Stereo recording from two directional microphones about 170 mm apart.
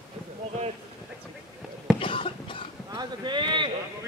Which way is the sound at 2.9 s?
25° right (ahead or behind).